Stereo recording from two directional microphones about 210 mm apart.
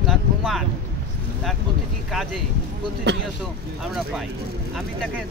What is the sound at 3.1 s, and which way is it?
Speech, 55° right (ahead or behind).